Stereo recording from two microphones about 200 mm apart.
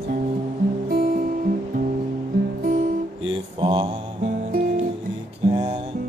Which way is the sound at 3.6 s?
25° right (ahead or behind).